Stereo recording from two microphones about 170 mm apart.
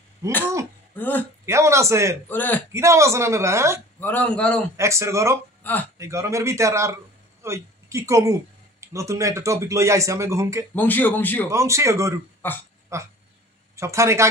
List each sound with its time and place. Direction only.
0.2 s speech: 15° right (ahead or behind)
0.9 s a man's voice: 10° left (ahead or behind)
1.4 s a sound: 15° right (ahead or behind)
2.2 s a man's voice: 10° left (ahead or behind)
2.7 s speech: 15° right (ahead or behind)
4.0 s a man's voice: 10° left (ahead or behind)
4.7 s speech: 15° right (ahead or behind)
5.6 s speech: 10° left (ahead or behind)
5.9 s speech: 15° right (ahead or behind)
10.7 s a man's voice: 10° left (ahead or behind)
11.5 s speech: 15° right (ahead or behind)
12.4 s a man's voice: 10° left (ahead or behind)
12.9 s speech: 15° right (ahead or behind)